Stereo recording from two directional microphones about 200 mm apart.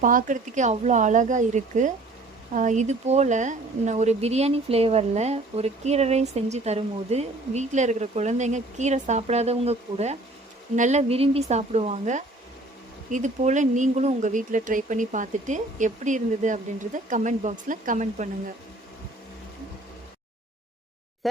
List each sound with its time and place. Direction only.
0.0 s a woman's voice: 40° right (ahead or behind)